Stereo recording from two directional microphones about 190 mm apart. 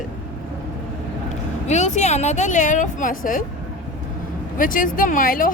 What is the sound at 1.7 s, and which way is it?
Speech, 35° left (ahead or behind).